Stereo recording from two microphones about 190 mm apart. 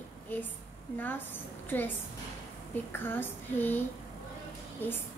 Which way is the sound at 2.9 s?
10° left (ahead or behind).